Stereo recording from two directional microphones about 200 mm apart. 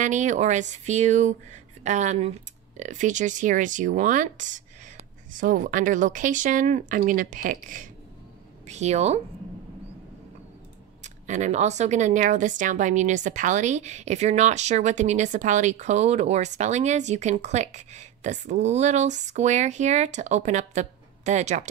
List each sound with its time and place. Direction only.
0.0 s a woman's voice: 35° right (ahead or behind)
11.2 s a woman's voice: 35° right (ahead or behind)